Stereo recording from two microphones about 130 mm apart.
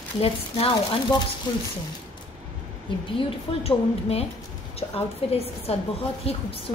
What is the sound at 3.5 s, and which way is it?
A woman's voice, 50° left (ahead or behind).